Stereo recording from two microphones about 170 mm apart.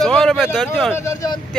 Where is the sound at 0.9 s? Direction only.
15° left (ahead or behind).